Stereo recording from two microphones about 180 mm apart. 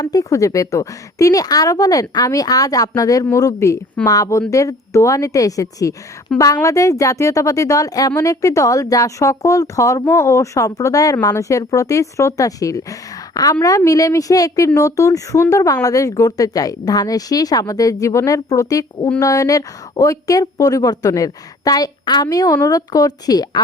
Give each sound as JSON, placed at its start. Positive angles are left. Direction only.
{"t": 0.0, "sound": "a woman's voice", "side_deg": 20}